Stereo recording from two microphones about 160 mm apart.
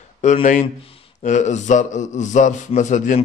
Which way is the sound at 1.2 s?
50° left (ahead or behind).